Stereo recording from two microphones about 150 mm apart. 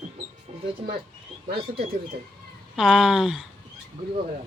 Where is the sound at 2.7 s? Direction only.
5° right (ahead or behind).